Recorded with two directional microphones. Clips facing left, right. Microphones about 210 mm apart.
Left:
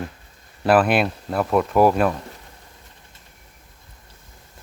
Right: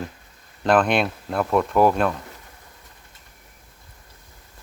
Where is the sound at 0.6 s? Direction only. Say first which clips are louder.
Left 2 dB; 5° left (ahead or behind).